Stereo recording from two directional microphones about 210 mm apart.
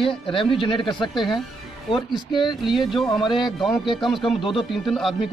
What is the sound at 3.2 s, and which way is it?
Speech, 20° left (ahead or behind).